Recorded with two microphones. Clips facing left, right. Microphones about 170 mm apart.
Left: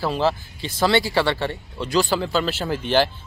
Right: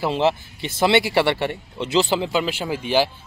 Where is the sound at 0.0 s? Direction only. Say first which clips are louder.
Right 2 dB; 20° right (ahead or behind).